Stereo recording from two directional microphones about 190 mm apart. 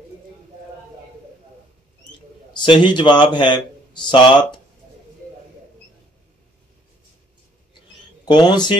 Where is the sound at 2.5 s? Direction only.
25° left (ahead or behind).